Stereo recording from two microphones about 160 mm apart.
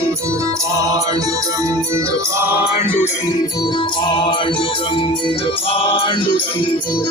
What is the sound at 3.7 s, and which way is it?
Music, 30° left (ahead or behind).